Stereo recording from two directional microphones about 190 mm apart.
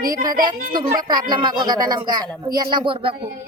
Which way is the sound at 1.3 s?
25° right (ahead or behind).